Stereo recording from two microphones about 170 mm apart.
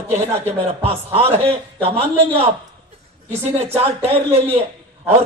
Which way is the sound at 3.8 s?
35° right (ahead or behind).